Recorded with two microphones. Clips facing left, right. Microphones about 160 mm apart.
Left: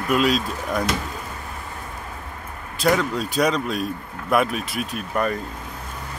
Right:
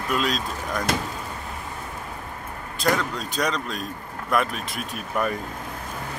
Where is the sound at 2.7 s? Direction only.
5° left (ahead or behind).